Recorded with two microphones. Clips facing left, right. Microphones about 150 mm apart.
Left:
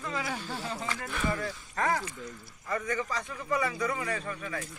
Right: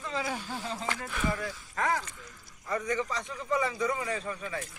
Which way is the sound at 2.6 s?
15° right (ahead or behind).